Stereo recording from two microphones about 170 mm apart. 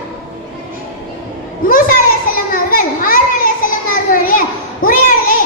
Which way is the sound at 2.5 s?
55° left (ahead or behind).